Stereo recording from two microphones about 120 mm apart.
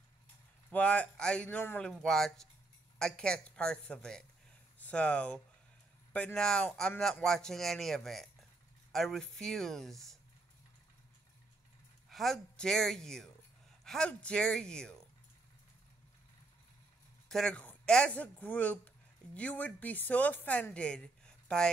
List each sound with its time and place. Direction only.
0.7 s speech: 10° left (ahead or behind)
1.9 s speech: 5° left (ahead or behind)
12.1 s speech: centre (ahead or behind)
17.3 s speech: 5° left (ahead or behind)